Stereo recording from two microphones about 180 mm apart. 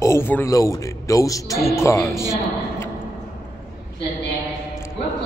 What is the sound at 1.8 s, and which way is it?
A man's voice, 15° left (ahead or behind).